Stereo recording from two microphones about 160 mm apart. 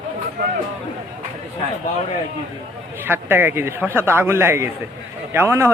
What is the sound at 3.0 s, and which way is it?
A man's voice, 15° right (ahead or behind).